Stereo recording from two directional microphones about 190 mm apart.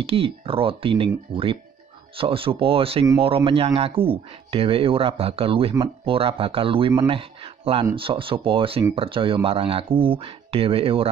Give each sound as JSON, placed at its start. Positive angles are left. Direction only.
{"t": 0.0, "sound": "speech", "side_deg": -30}